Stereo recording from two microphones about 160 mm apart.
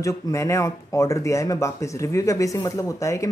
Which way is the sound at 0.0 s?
20° left (ahead or behind).